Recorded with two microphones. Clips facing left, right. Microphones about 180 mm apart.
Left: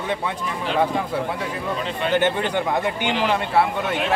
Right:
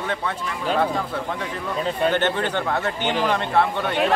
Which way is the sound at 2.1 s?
10° left (ahead or behind).